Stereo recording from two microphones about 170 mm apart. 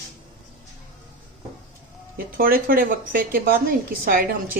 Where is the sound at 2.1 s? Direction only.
60° right (ahead or behind).